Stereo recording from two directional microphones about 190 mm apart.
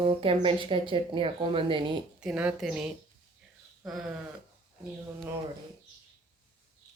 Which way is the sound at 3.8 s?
5° right (ahead or behind).